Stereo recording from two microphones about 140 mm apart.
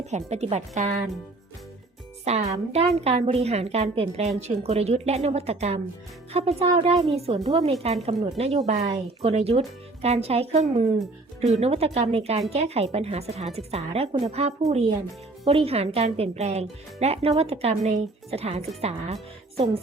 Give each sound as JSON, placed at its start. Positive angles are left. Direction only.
{"t": 0.1, "sound": "speech", "side_deg": -50}
{"t": 2.2, "sound": "speech", "side_deg": -50}